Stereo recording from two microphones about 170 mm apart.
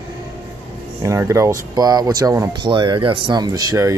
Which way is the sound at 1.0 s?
15° right (ahead or behind).